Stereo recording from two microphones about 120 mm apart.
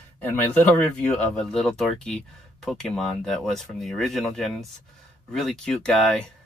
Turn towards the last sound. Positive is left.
turn(degrees=5)  # may be behind; listen again after turning